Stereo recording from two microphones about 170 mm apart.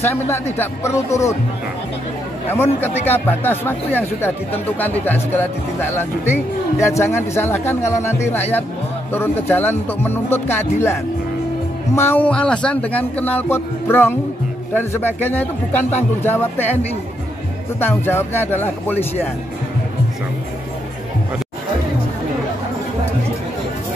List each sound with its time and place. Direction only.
0.3 s speech: 15° left (ahead or behind)
2.5 s speech: 10° left (ahead or behind)
17.7 s speech: 15° left (ahead or behind)